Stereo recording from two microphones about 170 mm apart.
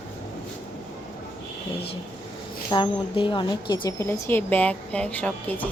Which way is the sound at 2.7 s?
30° left (ahead or behind).